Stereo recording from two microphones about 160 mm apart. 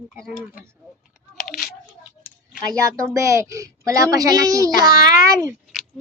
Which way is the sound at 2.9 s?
20° right (ahead or behind).